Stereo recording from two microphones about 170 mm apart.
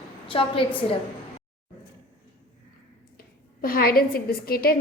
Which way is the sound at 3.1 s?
60° left (ahead or behind).